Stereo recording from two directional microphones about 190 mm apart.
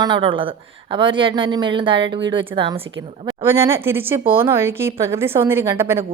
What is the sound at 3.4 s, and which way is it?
A woman's voice, 15° right (ahead or behind).